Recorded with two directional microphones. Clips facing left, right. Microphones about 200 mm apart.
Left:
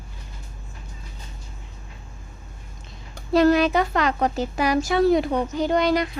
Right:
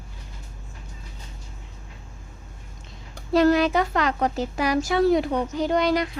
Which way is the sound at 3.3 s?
20° left (ahead or behind).